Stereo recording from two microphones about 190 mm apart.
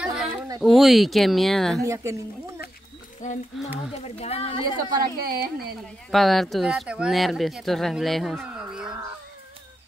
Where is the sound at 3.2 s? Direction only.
40° left (ahead or behind).